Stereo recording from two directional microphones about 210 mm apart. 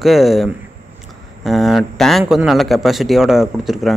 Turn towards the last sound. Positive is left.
turn(degrees=0)  # may be behind; listen again after turning